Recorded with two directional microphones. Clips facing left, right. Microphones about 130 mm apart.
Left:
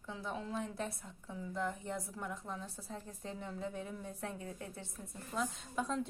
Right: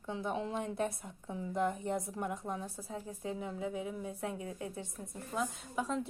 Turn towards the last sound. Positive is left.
turn(degrees=-5)  # may be behind; listen again after turning